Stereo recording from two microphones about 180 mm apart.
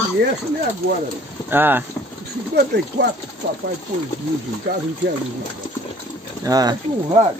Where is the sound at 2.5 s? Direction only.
65° right (ahead or behind).